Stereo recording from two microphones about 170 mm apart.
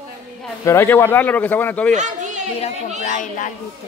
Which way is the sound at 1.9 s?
45° right (ahead or behind).